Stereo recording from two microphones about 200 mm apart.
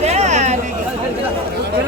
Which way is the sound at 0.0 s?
35° right (ahead or behind).